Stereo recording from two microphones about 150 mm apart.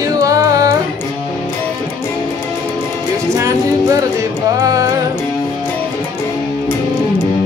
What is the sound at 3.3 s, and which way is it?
Music, 20° right (ahead or behind).